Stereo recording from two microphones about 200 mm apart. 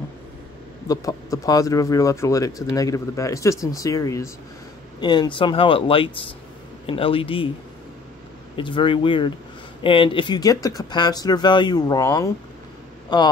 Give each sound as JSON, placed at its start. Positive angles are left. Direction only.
{"t": 0.8, "sound": "speech", "side_deg": 15}
{"t": 8.5, "sound": "speech", "side_deg": 25}